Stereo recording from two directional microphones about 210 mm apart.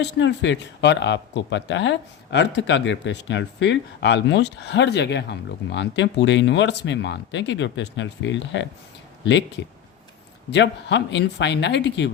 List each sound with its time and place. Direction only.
0.0 s speech: 55° left (ahead or behind)